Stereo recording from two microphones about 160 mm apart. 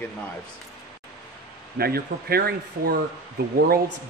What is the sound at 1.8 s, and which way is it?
Speech, 75° right (ahead or behind).